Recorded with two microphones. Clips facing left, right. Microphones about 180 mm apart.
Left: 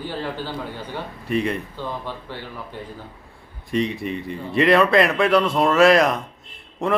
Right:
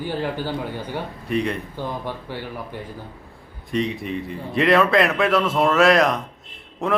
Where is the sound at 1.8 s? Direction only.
15° right (ahead or behind).